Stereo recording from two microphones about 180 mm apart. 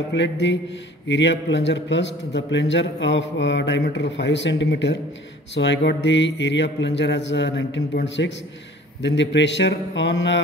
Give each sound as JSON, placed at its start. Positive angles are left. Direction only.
{"t": 0.1, "sound": "speech", "side_deg": 80}
{"t": 3.8, "sound": "speech", "side_deg": 75}